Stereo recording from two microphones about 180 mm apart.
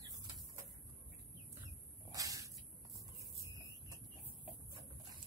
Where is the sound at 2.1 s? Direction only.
20° right (ahead or behind).